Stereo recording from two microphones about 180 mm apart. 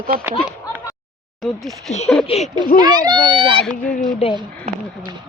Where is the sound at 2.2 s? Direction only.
35° left (ahead or behind).